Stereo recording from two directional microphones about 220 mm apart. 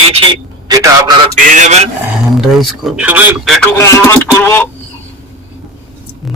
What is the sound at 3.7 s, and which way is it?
Speech, 15° left (ahead or behind).